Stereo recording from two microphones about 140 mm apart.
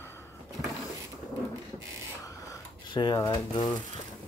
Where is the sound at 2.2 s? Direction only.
25° left (ahead or behind).